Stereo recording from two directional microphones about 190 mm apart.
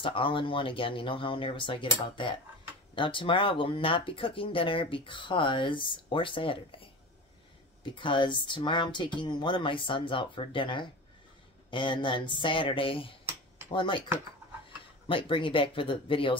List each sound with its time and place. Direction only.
0.0 s speech: 25° left (ahead or behind)
15.0 s speech: 25° left (ahead or behind)